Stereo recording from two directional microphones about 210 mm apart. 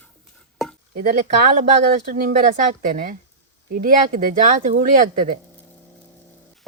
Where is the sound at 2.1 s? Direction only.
40° right (ahead or behind).